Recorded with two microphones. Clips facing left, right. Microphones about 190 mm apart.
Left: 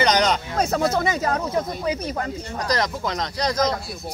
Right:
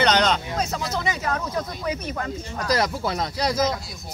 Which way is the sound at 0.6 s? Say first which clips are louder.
Left 6 dB; 55° left (ahead or behind).